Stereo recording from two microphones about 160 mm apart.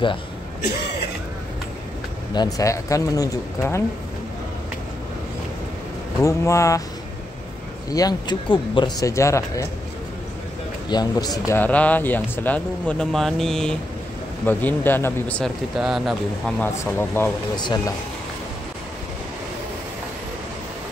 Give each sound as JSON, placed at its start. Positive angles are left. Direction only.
{"t": 2.3, "sound": "speech", "side_deg": 25}
{"t": 6.2, "sound": "speech", "side_deg": 20}
{"t": 7.9, "sound": "speech", "side_deg": 25}
{"t": 10.9, "sound": "speech", "side_deg": 25}
{"t": 15.8, "sound": "speech", "side_deg": 0}
{"t": 17.2, "sound": "speech", "side_deg": 15}
{"t": 17.6, "sound": "speech", "side_deg": 25}